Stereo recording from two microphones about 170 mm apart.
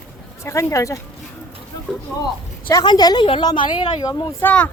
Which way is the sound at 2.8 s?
25° left (ahead or behind).